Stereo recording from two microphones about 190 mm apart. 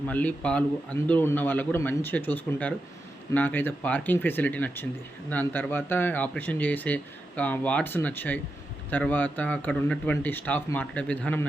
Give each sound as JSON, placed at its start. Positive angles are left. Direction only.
{"t": 0.1, "sound": "speech", "side_deg": 10}